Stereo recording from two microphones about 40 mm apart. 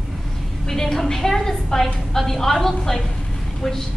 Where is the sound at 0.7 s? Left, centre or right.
Centre.